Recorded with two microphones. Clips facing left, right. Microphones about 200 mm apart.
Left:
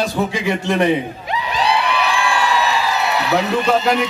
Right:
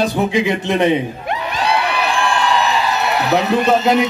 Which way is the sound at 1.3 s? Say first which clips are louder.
Left 1 dB; 55° right (ahead or behind).